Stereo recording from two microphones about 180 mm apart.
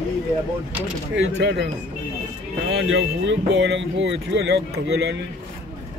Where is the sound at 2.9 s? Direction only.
80° right.